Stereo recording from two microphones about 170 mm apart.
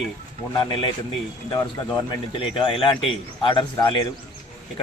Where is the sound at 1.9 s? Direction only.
30° left (ahead or behind).